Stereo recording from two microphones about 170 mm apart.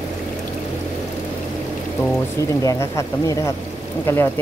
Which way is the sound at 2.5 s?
15° left (ahead or behind).